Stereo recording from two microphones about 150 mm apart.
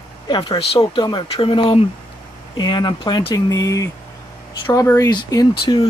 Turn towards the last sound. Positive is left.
turn(degrees=30)  # may be behind; listen again after turning